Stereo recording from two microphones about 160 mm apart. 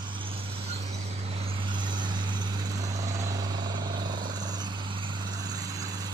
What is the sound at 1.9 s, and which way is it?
Vehicle, 30° right (ahead or behind).